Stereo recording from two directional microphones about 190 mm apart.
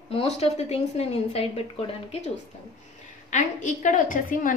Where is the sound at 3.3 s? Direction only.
40° left (ahead or behind).